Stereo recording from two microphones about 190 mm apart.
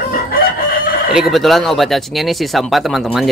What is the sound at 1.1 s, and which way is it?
Speech, centre (ahead or behind).